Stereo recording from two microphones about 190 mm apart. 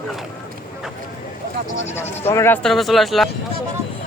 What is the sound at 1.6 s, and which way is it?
Speech, 40° left (ahead or behind).